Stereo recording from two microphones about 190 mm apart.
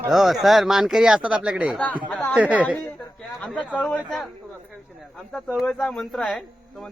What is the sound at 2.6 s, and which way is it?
A man's voice, 5° left (ahead or behind).